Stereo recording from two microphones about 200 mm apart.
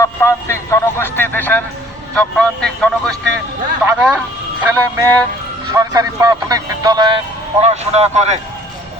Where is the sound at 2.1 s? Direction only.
5° left (ahead or behind).